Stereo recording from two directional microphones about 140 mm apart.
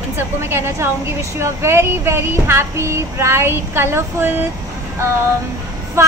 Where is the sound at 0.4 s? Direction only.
20° right (ahead or behind).